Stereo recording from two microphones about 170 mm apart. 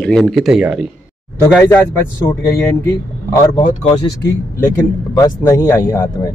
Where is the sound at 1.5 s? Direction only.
10° left (ahead or behind).